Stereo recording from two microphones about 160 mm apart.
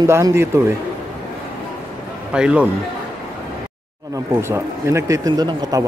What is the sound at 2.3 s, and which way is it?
Speech, 5° right (ahead or behind).